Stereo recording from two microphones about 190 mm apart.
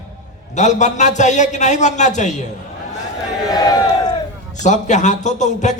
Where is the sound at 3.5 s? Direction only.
20° left (ahead or behind).